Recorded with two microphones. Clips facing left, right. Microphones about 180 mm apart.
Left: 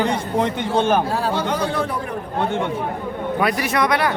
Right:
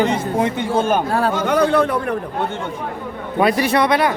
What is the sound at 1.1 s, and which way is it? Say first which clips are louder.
Speech: right 3 dB; 60° right (ahead or behind).